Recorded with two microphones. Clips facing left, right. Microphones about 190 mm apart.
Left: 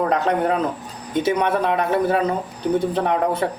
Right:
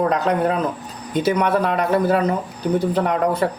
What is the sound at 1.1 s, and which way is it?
Speech, 25° left (ahead or behind).